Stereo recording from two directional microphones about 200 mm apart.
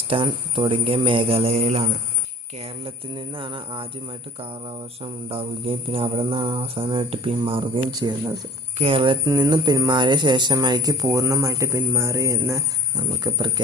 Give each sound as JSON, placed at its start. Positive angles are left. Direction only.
{"t": 0.1, "sound": "speech", "side_deg": -25}
{"t": 5.3, "sound": "speech", "side_deg": -30}